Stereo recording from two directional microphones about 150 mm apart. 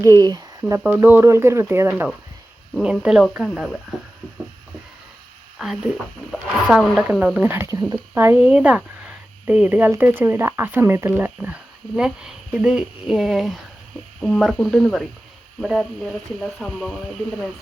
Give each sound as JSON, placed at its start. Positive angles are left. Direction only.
{"t": 0.0, "sound": "speech", "side_deg": -25}
{"t": 0.8, "sound": "speech", "side_deg": -15}
{"t": 2.7, "sound": "speech", "side_deg": -5}
{"t": 5.5, "sound": "speech", "side_deg": -5}